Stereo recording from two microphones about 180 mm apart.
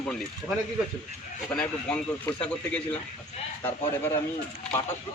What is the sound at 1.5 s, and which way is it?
A man's voice, 5° left (ahead or behind).